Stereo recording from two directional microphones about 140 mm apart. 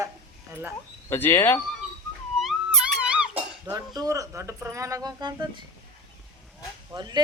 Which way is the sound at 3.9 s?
25° right (ahead or behind).